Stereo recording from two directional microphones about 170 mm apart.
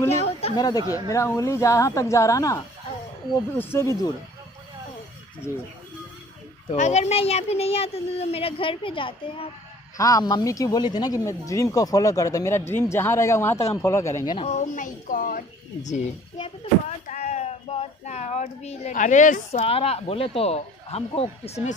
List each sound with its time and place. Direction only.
0.2 s a sound: 35° left (ahead or behind)
0.6 s a woman's voice: 20° left (ahead or behind)
6.7 s speech: 40° left (ahead or behind)
9.9 s a woman's voice: 20° left (ahead or behind)
14.3 s speech: 40° left (ahead or behind)
16.3 s speech: 30° left (ahead or behind)
17.1 s speech: 40° left (ahead or behind)
19.6 s speech: 35° left (ahead or behind)